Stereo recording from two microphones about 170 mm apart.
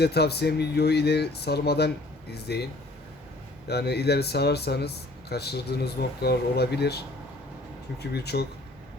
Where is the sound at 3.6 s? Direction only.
75° left (ahead or behind).